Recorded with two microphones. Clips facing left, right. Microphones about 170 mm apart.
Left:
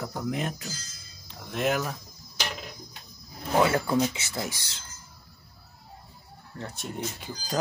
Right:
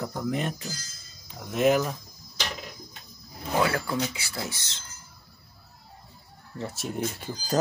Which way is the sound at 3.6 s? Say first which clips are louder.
Left 4 dB; 20° left (ahead or behind).